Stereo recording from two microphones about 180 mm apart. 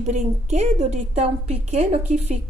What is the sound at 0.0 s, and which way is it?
Speech, 40° right (ahead or behind).